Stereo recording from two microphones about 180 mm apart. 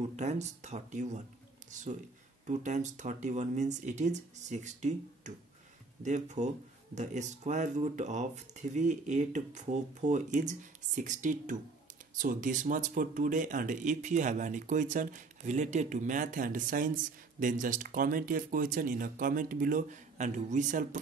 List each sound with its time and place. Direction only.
0.1 s speech: 40° right (ahead or behind)